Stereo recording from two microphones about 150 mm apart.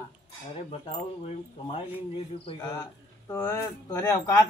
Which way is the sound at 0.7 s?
45° left (ahead or behind).